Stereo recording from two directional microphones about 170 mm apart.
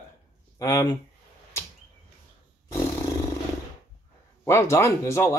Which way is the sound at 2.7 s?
20° left (ahead or behind).